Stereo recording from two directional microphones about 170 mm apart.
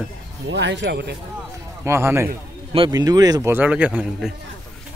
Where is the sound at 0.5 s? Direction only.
90° right.